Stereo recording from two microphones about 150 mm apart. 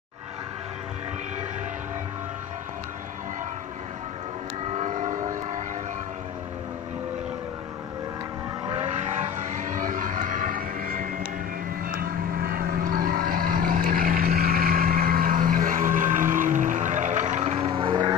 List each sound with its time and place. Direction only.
4.7 s vehicle: 50° right (ahead or behind)
8.8 s vehicle: 50° right (ahead or behind)
12.4 s vehicle: 70° right (ahead or behind); by 18.1 s 30° right (ahead or behind)